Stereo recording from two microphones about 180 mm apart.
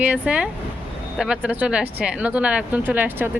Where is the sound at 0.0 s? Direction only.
10° right (ahead or behind).